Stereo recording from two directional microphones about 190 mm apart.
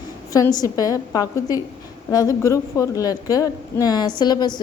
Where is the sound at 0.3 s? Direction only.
20° left (ahead or behind).